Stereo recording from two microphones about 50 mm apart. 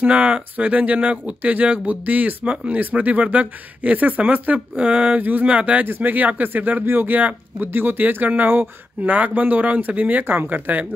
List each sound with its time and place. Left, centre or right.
0.0 s speech: right
5.9 s speech: right
7.6 s speech: right
10.2 s speech: right